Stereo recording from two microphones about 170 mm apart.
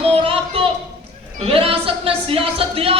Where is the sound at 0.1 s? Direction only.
35° right (ahead or behind).